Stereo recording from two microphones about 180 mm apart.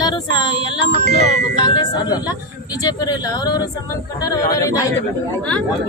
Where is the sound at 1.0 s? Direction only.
65° right (ahead or behind).